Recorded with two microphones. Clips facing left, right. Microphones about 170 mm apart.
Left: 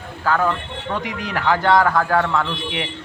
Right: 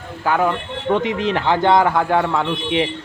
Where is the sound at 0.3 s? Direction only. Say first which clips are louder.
Right 2 dB; 15° right (ahead or behind).